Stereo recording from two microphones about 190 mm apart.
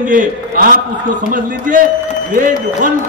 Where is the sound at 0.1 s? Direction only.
45° right (ahead or behind).